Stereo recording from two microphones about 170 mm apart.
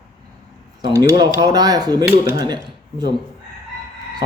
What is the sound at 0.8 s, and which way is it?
Speech, 20° right (ahead or behind).